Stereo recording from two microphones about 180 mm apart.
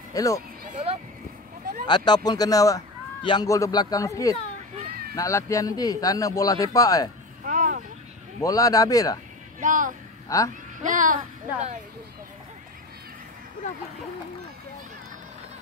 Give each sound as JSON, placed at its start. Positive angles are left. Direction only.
{"t": 0.1, "sound": "speech", "side_deg": 20}
{"t": 0.7, "sound": "a sound", "side_deg": -45}
{"t": 1.9, "sound": "a man's voice", "side_deg": 25}
{"t": 7.4, "sound": "a sound", "side_deg": -45}
{"t": 8.4, "sound": "a man's voice", "side_deg": 20}
{"t": 9.6, "sound": "a child's voice", "side_deg": -45}
{"t": 10.3, "sound": "speech", "side_deg": 20}
{"t": 10.8, "sound": "a child's voice", "side_deg": -45}